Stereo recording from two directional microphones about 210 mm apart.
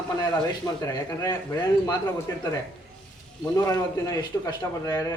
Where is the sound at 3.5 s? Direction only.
15° left (ahead or behind).